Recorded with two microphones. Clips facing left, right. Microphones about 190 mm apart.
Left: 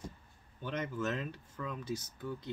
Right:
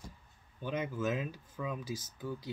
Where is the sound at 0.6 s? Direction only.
10° right (ahead or behind).